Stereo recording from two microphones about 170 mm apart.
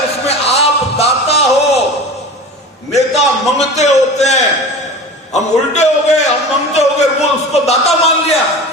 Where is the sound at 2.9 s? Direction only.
40° left (ahead or behind).